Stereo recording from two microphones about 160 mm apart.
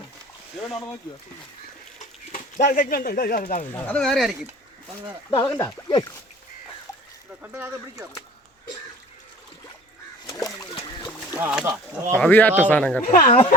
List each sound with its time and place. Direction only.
2.3 s speech: 50° left (ahead or behind)
3.7 s speech: 10° left (ahead or behind)
5.4 s speech: 10° left (ahead or behind)
5.6 s speech: 20° left (ahead or behind)
7.4 s speech: 15° right (ahead or behind)
10.2 s splash: 20° left (ahead or behind)
11.3 s speech: 10° right (ahead or behind)
12.1 s speech: 10° left (ahead or behind)
13.1 s speech: 55° left (ahead or behind)